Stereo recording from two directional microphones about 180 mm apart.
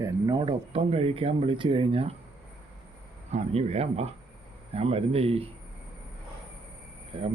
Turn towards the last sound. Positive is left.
turn(degrees=-30)  # may be behind; listen again after turning